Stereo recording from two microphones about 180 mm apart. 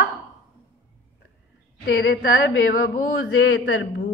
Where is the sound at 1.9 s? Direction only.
65° left (ahead or behind).